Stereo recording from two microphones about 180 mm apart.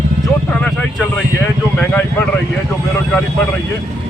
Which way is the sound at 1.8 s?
10° left (ahead or behind).